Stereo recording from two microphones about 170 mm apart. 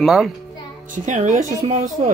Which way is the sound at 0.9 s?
50° right (ahead or behind).